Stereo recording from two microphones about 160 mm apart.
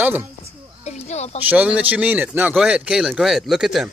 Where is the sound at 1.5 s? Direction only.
10° right (ahead or behind).